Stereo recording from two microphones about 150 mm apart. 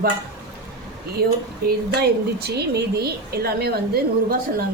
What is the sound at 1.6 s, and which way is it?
A woman's voice, 90° right.